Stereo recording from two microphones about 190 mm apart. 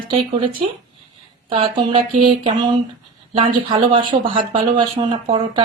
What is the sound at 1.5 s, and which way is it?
Speech, 25° right (ahead or behind).